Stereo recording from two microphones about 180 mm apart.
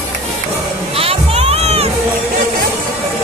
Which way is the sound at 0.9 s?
35° right (ahead or behind).